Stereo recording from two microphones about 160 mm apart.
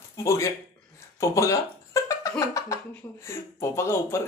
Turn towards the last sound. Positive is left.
turn(degrees=15)  # may be behind; listen again after turning